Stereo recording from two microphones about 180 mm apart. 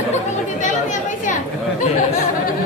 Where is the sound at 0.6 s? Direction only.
45° left (ahead or behind).